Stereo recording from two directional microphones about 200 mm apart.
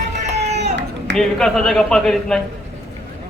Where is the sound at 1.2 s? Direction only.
Centre (ahead or behind).